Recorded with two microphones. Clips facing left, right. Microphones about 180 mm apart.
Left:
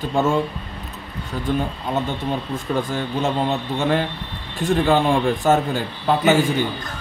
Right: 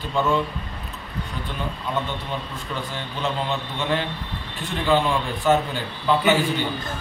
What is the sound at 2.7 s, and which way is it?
A man's voice, 45° left (ahead or behind).